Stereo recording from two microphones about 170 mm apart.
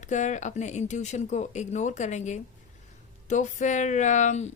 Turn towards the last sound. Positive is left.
turn(degrees=45)  # may be behind; listen again after turning